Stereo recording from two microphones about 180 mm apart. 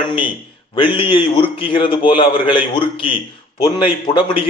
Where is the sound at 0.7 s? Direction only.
30° left (ahead or behind).